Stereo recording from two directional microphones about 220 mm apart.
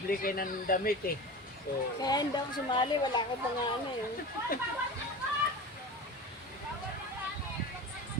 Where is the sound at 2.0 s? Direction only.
20° left (ahead or behind).